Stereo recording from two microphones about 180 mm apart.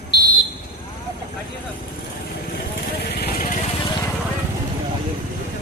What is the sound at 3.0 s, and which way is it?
Vehicle, 65° left (ahead or behind).